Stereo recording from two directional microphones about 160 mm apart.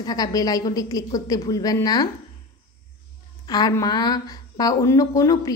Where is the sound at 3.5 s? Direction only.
25° left (ahead or behind).